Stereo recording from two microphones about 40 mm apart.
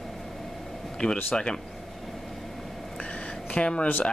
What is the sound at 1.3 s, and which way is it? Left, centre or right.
Speech, left.